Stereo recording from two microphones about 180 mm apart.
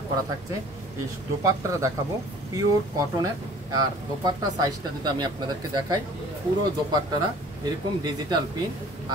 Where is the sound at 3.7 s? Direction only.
20° right (ahead or behind).